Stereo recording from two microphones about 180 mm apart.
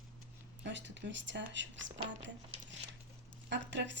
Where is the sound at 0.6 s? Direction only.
90° right.